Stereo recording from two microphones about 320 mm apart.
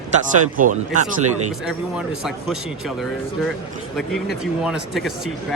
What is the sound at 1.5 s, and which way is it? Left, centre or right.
Speech, centre.